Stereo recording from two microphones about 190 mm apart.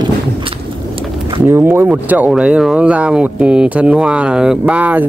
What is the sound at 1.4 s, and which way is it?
Speech, 10° right (ahead or behind).